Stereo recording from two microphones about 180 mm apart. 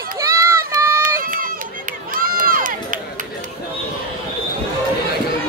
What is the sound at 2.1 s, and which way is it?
Crowd, 50° right (ahead or behind).